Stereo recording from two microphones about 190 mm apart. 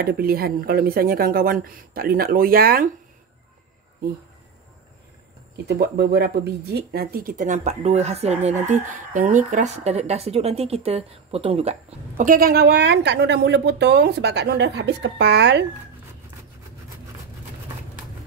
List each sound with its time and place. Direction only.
0.0 s speech: 55° right (ahead or behind)
5.7 s speech: 55° right (ahead or behind); by 11.7 s 30° right (ahead or behind)
12.2 s a woman's voice: 45° right (ahead or behind); by 15.6 s 65° right (ahead or behind)